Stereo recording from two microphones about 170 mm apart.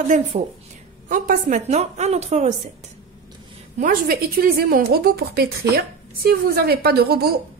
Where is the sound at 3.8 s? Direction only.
55° right (ahead or behind).